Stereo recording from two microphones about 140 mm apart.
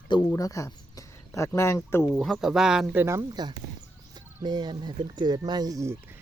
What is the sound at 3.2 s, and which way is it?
Speech, 30° right (ahead or behind).